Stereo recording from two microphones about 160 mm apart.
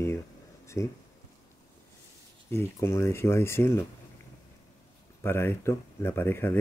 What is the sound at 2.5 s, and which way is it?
Speech, 15° left (ahead or behind).